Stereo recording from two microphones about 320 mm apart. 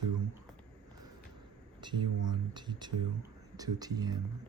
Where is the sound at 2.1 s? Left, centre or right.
Right.